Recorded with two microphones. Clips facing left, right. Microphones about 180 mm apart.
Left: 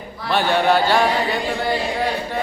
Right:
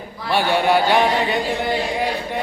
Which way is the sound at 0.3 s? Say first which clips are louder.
Even; 10° right (ahead or behind).